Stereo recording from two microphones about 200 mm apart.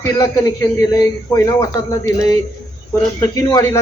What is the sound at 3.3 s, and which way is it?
Speech, 15° left (ahead or behind).